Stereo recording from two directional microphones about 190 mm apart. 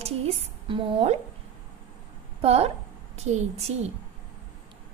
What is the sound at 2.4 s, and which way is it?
Speech, 35° right (ahead or behind).